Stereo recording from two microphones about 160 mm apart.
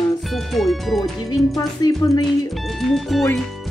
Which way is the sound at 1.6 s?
25° left (ahead or behind).